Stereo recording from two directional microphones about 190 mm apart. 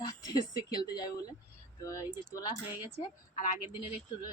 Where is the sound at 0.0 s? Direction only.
20° left (ahead or behind).